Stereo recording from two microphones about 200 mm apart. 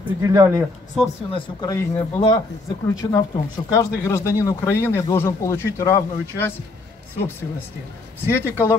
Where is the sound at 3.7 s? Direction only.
15° left (ahead or behind).